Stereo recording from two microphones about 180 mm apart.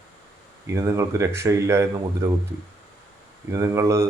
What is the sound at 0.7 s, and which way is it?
Speech, 15° right (ahead or behind).